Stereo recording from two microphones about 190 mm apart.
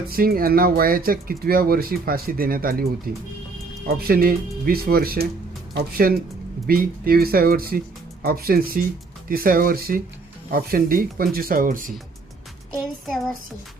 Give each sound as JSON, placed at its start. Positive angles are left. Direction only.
{"t": 0.1, "sound": "speech", "side_deg": -50}